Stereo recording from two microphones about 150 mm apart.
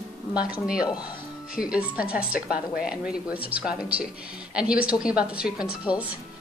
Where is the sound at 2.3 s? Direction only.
70° left (ahead or behind).